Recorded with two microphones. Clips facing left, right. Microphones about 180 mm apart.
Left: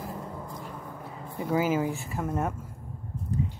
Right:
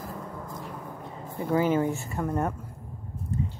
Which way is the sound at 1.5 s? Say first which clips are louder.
Right 2 dB; 5° left (ahead or behind).